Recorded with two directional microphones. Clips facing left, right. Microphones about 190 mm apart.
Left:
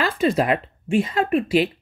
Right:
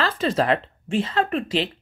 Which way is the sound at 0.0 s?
10° left (ahead or behind).